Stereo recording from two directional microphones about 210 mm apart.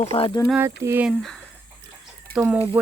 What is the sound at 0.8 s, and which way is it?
Speech, 10° right (ahead or behind).